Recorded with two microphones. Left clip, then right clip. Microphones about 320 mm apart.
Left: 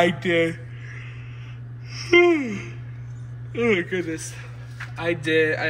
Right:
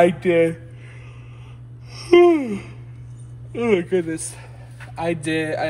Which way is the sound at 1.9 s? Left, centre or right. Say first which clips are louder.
Right 3 dB; centre.